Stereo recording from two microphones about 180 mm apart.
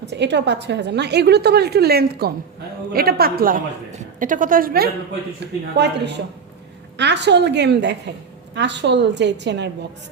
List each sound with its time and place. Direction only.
0.0 s a woman's voice: 75° right (ahead or behind); by 4.9 s 55° right (ahead or behind)
5.7 s a woman's voice: 70° right (ahead or behind)